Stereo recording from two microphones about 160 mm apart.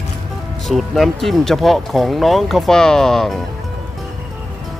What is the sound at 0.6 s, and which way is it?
Speech, centre (ahead or behind).